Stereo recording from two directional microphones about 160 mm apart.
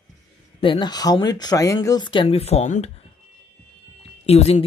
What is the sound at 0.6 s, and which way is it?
Speech, 30° left (ahead or behind).